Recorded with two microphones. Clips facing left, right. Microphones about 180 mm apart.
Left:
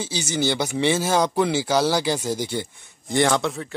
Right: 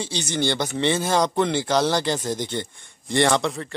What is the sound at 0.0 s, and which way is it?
Speech, 5° left (ahead or behind).